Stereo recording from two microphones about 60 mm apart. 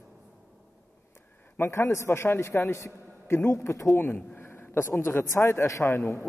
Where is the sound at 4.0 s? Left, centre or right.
Left.